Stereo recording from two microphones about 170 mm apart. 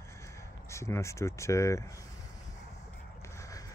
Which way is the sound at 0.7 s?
15° left (ahead or behind).